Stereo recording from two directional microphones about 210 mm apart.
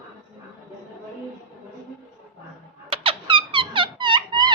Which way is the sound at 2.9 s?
25° right (ahead or behind).